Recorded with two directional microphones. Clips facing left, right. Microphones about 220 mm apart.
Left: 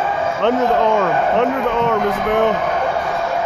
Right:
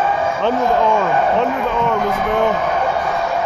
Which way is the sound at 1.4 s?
65° left (ahead or behind).